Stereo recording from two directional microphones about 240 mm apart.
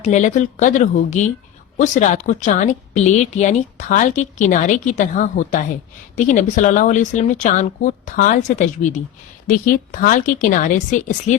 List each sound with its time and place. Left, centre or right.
0.0 s a woman's voice: left